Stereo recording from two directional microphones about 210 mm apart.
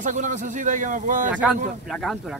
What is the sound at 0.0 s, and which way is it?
Speech, 35° right (ahead or behind).